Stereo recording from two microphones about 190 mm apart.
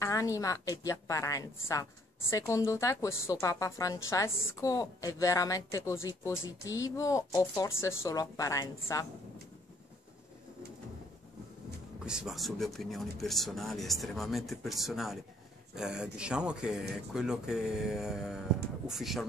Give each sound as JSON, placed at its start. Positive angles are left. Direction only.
{"t": 0.0, "sound": "a woman's voice", "side_deg": 15}
{"t": 12.1, "sound": "speech", "side_deg": -5}